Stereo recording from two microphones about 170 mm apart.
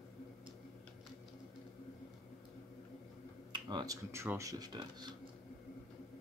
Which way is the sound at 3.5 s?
25° right (ahead or behind).